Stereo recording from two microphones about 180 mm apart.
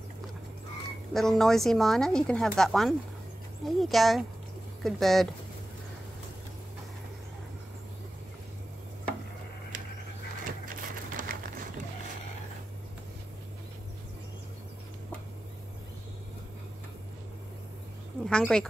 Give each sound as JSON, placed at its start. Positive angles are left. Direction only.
{"t": 1.1, "sound": "speech", "side_deg": 0}
{"t": 11.1, "sound": "a sound", "side_deg": -50}
{"t": 18.2, "sound": "speech", "side_deg": 5}